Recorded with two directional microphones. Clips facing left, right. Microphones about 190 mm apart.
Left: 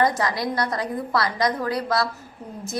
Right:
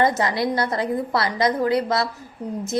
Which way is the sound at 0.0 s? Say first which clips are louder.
Right 2 dB; 25° right (ahead or behind).